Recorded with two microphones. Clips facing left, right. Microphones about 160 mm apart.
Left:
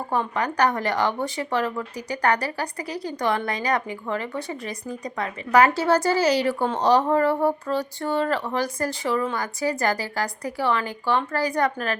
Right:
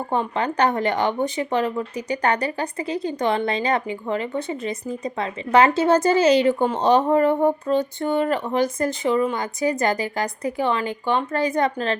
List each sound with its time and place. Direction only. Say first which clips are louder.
0.1 s speech: right 2 dB; 25° right (ahead or behind)